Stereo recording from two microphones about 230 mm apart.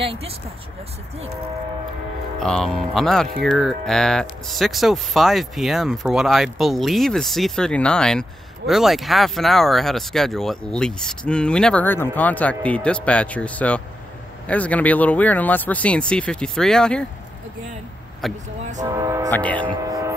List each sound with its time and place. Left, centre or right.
0.0 s speech: right
2.4 s speech: centre
18.2 s speech: centre
18.8 s speech: centre
19.3 s speech: centre
19.7 s a sound: centre